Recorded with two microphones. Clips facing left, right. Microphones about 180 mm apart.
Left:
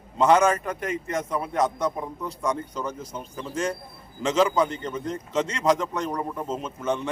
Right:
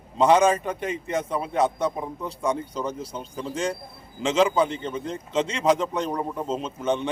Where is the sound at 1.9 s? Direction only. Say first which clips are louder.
Even; 10° right (ahead or behind).